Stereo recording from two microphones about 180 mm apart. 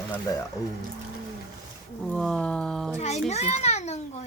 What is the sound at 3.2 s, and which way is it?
Children playing, 35° left (ahead or behind).